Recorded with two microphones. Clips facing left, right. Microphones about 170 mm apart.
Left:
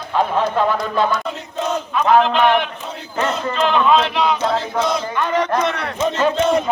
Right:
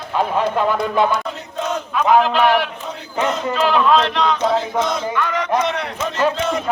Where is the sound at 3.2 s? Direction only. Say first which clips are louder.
Right 1 dB; 15° right (ahead or behind).